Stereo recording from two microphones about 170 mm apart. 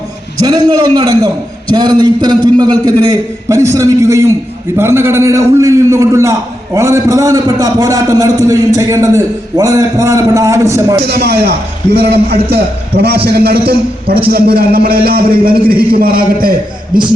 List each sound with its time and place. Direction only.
0.4 s a man's voice: 25° right (ahead or behind)
11.1 s a man's voice: 70° right (ahead or behind)